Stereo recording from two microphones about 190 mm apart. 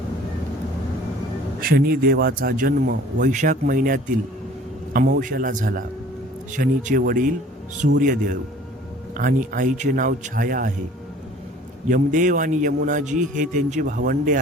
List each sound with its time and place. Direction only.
1.6 s a man's voice: 50° right (ahead or behind)
11.9 s a man's voice: 45° right (ahead or behind)